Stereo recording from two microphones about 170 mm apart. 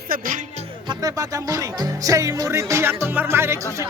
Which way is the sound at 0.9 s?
20° right (ahead or behind).